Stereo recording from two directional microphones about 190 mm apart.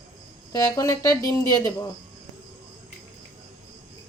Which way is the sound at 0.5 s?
20° left (ahead or behind).